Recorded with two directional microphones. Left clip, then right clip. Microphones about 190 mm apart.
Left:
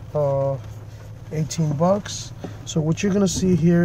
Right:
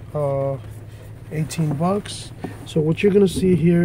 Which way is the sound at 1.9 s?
25° left (ahead or behind).